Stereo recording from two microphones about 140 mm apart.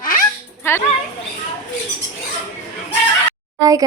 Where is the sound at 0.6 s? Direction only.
15° left (ahead or behind).